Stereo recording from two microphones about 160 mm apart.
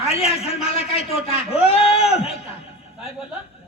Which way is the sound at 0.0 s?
40° left (ahead or behind).